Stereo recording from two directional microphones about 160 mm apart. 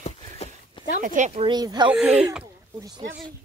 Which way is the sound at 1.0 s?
50° right (ahead or behind).